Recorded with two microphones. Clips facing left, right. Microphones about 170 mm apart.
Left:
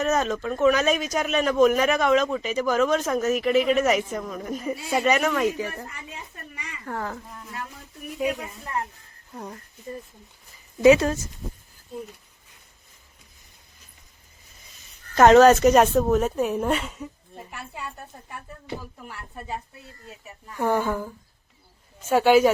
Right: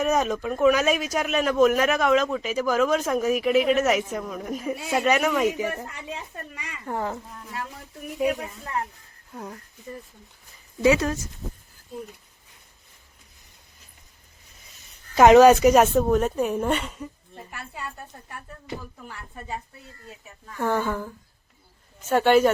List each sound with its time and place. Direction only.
0.0 s a man's voice: 10° right (ahead or behind)
6.8 s speech: 20° right (ahead or behind)
9.3 s speech: centre (ahead or behind)
10.8 s speech: 25° left (ahead or behind)
15.1 s a man's voice: 10° right (ahead or behind); by 21.1 s 10° left (ahead or behind)
22.1 s a woman's voice: 5° left (ahead or behind)